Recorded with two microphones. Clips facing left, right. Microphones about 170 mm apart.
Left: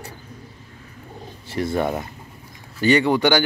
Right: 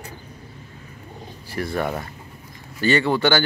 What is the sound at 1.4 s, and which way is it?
Speech, 25° left (ahead or behind).